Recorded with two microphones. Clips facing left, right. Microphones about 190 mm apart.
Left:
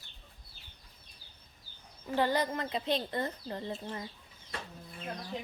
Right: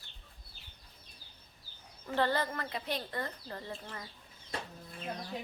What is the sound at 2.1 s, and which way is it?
Speech, 15° left (ahead or behind).